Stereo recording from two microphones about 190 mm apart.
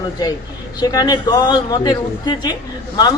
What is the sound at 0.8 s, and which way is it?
A man's voice, 20° left (ahead or behind).